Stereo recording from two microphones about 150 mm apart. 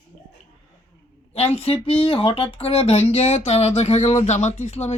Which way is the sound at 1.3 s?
45° left (ahead or behind).